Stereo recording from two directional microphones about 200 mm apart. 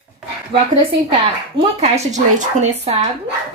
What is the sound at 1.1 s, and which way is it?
A woman's voice, 30° right (ahead or behind).